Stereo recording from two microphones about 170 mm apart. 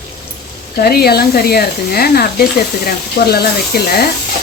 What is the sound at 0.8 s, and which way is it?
Speech, 65° left (ahead or behind).